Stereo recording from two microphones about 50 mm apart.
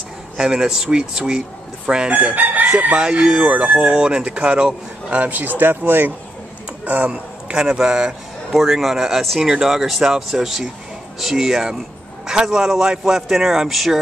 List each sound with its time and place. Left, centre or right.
0.4 s a man's voice: centre
2.0 s speech: right
3.0 s speech: centre
5.1 s speech: right
6.9 s a man's voice: right; by 13.9 s centre